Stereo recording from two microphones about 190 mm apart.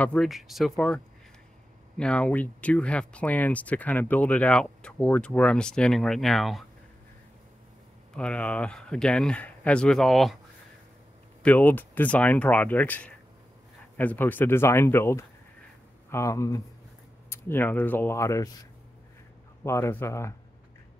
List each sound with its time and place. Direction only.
0.0 s speech: 5° left (ahead or behind)
8.1 s speech: 5° left (ahead or behind)
11.4 s speech: 10° left (ahead or behind)
19.6 s speech: 15° left (ahead or behind)